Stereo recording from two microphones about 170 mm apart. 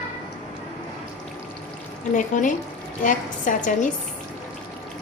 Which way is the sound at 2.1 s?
50° left (ahead or behind).